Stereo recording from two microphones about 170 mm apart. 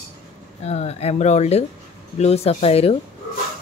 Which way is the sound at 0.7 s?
40° left (ahead or behind).